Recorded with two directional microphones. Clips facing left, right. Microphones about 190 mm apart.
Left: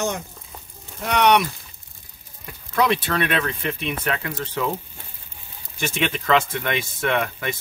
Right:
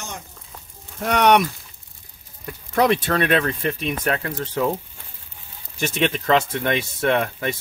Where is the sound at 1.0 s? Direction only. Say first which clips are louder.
Right 1 dB; 45° right (ahead or behind).